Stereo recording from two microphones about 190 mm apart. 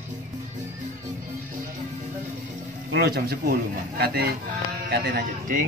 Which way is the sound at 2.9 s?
55° right (ahead or behind).